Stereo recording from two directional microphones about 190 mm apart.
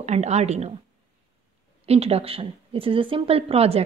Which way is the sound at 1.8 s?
30° right (ahead or behind).